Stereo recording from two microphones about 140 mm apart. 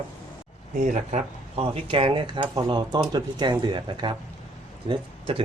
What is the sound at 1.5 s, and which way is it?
Speech, 40° right (ahead or behind).